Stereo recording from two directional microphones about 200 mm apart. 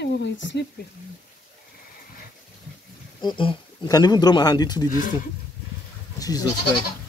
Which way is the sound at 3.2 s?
25° left (ahead or behind).